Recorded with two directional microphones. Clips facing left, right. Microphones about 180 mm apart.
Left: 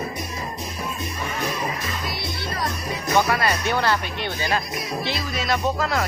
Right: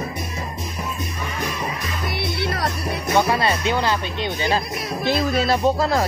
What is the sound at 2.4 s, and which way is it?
Music, 65° right (ahead or behind).